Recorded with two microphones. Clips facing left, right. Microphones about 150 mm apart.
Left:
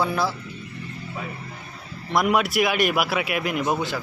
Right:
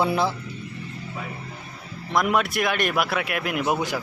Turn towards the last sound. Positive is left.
turn(degrees=-10)  # may be behind; listen again after turning